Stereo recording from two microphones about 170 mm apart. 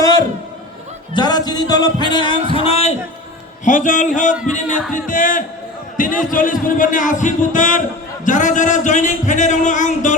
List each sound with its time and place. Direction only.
0.0 s a sound: 20° left (ahead or behind)
1.1 s music: 25° left (ahead or behind)
2.5 s speech: 35° left (ahead or behind)
3.6 s a man's voice: 45° left (ahead or behind)